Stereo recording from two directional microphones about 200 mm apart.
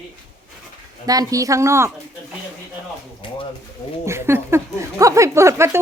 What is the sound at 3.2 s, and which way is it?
Speech, 25° left (ahead or behind).